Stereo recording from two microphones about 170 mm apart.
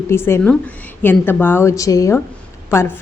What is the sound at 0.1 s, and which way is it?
A woman's voice, 15° left (ahead or behind).